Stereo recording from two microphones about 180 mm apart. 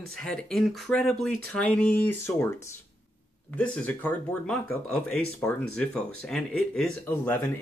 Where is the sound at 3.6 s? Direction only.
5° left (ahead or behind).